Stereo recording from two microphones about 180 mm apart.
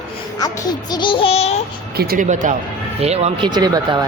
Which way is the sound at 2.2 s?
45° right (ahead or behind).